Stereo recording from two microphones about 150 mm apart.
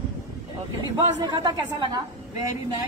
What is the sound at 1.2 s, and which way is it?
Speech, 30° right (ahead or behind).